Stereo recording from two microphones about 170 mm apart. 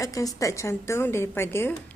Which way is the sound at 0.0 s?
20° left (ahead or behind).